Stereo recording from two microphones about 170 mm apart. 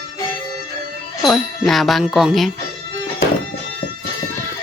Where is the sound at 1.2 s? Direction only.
Centre (ahead or behind).